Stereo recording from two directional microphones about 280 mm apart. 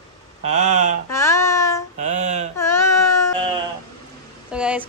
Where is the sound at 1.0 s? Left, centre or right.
Centre.